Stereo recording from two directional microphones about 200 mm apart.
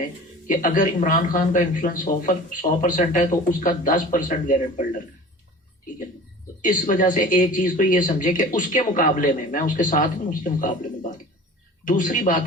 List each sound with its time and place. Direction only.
0.4 s speech: 40° left (ahead or behind)
6.6 s speech: 40° left (ahead or behind)
11.9 s speech: 40° left (ahead or behind)